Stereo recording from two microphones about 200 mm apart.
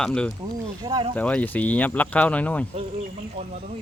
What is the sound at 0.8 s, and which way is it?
Speech, 25° right (ahead or behind).